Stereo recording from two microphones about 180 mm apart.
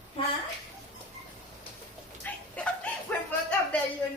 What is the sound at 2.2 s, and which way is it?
Dog, 5° left (ahead or behind).